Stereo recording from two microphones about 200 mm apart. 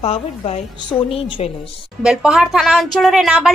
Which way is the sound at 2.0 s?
Centre (ahead or behind).